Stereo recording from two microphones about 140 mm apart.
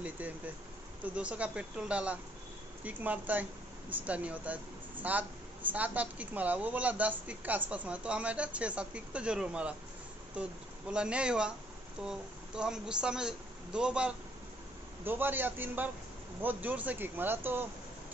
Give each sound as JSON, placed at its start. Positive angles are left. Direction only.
{"t": 1.0, "sound": "speech", "side_deg": -10}